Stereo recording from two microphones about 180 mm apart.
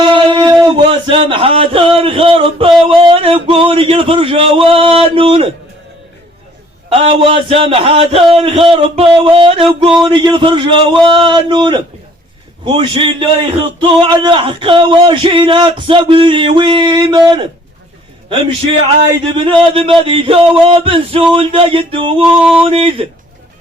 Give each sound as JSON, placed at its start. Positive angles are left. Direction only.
{"t": 0.0, "sound": "speech", "side_deg": -25}
{"t": 6.9, "sound": "speech", "side_deg": -30}
{"t": 8.4, "sound": "a sound", "side_deg": -30}
{"t": 19.5, "sound": "speech", "side_deg": -30}
{"t": 22.2, "sound": "music", "side_deg": -5}
{"t": 22.6, "sound": "speech", "side_deg": -30}